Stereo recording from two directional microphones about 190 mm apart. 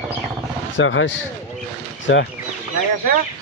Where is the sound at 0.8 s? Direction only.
80° left.